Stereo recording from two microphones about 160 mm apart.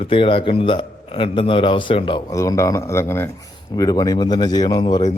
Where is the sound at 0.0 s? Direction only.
35° left (ahead or behind).